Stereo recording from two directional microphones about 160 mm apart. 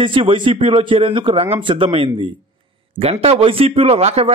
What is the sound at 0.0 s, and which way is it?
Speech, 35° right (ahead or behind).